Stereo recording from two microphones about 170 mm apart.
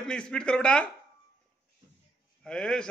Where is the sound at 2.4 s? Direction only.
5° left (ahead or behind).